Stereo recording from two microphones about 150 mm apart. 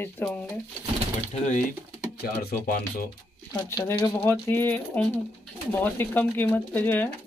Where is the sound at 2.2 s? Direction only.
90° left.